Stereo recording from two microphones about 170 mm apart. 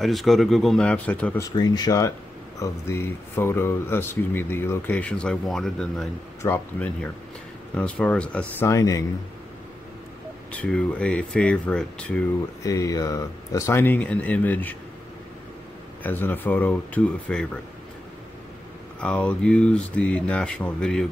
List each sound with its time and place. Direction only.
0.0 s speech: centre (ahead or behind)
1.5 s speech: 25° left (ahead or behind)
10.5 s speech: 5° left (ahead or behind)
12.6 s speech: 20° left (ahead or behind)
16.0 s speech: 10° left (ahead or behind)
18.9 s speech: 5° left (ahead or behind)